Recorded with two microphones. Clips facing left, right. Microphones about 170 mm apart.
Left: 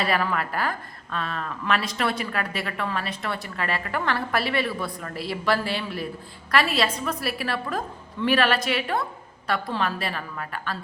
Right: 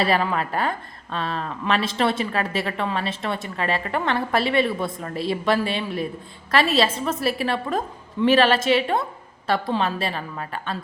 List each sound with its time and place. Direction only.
0.0 s a woman's voice: 25° right (ahead or behind)